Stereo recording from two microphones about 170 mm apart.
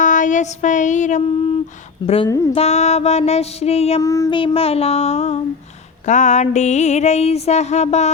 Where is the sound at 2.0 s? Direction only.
35° left (ahead or behind).